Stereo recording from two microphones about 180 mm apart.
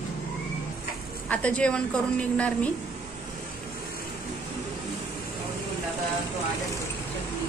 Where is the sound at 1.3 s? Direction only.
5° left (ahead or behind).